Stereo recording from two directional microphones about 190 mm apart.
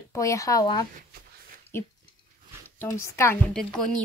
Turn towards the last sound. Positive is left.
turn(degrees=5)  # may be behind; listen again after turning